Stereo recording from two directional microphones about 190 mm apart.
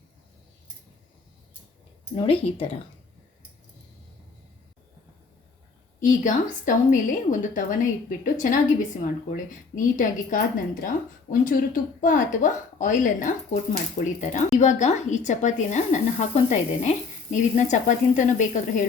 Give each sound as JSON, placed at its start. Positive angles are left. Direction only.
{"t": 2.1, "sound": "speech", "side_deg": 30}
{"t": 6.0, "sound": "a woman's voice", "side_deg": 40}